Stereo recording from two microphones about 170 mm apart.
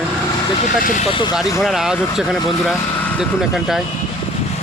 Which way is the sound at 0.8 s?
50° left (ahead or behind).